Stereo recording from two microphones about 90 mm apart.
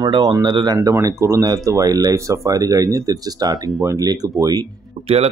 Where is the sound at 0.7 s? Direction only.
35° right (ahead or behind).